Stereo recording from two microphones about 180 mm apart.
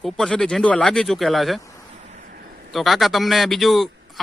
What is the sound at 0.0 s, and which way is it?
Speech, 5° left (ahead or behind).